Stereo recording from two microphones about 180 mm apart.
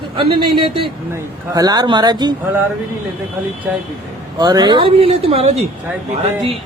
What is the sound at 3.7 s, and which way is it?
Speech, 10° right (ahead or behind).